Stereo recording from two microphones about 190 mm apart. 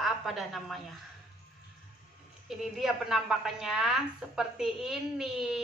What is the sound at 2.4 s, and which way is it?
A woman's voice, centre (ahead or behind).